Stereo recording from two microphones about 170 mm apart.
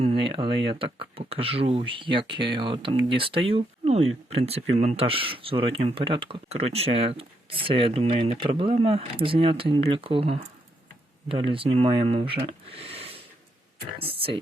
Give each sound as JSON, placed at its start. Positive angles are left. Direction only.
{"t": 0.0, "sound": "speech", "side_deg": -30}